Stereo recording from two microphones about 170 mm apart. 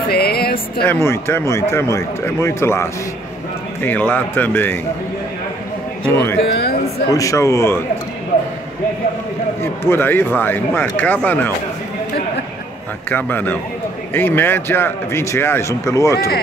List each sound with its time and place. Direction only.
0.1 s speech: 65° left (ahead or behind)
0.8 s speech: 15° left (ahead or behind)
6.1 s speech: 15° left (ahead or behind)
6.4 s speech: 70° left (ahead or behind)
7.1 s speech: 20° left (ahead or behind)
9.6 s speech: 15° left (ahead or behind)
13.1 s speech: 10° left (ahead or behind)